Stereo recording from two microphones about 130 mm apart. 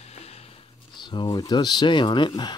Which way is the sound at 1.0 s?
35° left (ahead or behind).